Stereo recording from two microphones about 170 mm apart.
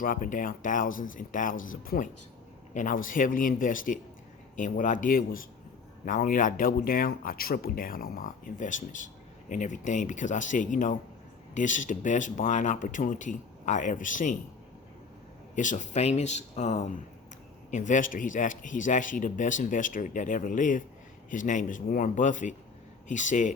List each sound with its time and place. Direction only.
0.0 s speech: 55° left (ahead or behind)
15.5 s speech: 50° left (ahead or behind)